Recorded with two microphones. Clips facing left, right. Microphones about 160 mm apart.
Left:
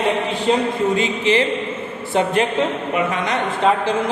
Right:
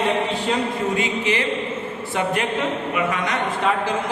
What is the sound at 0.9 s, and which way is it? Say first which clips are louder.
A man's voice: left 4 dB; 30° left (ahead or behind).